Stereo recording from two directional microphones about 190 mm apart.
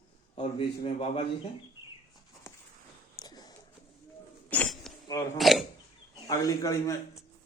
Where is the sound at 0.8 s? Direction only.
25° left (ahead or behind).